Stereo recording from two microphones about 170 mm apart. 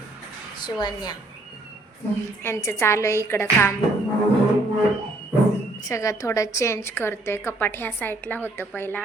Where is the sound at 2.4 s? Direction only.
15° left (ahead or behind).